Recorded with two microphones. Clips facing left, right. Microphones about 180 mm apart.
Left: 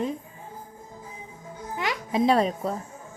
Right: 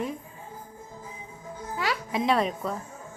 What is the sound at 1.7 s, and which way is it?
Music, 20° left (ahead or behind).